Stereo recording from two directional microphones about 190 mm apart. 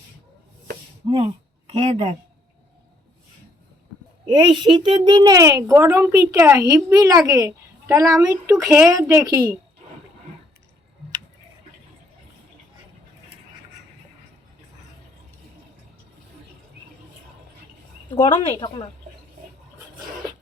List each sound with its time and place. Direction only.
1.0 s speech: 30° right (ahead or behind)
4.3 s a child's voice: 25° right (ahead or behind)
18.1 s a woman's voice: 25° left (ahead or behind)